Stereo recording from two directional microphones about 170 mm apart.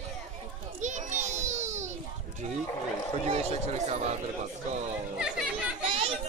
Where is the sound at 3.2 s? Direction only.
40° right (ahead or behind).